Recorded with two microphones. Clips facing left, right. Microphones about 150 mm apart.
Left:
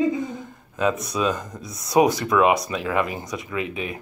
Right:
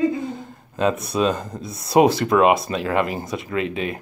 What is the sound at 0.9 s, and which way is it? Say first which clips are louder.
Speech: right 3 dB; 30° right (ahead or behind).